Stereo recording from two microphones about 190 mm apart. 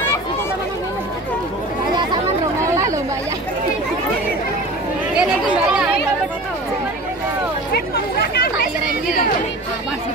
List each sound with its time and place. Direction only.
2.6 s chatter: 15° right (ahead or behind)
7.7 s chatter: 55° left (ahead or behind)